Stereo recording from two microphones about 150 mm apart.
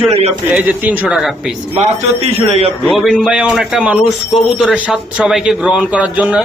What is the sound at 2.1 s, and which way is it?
Speech, 40° right (ahead or behind).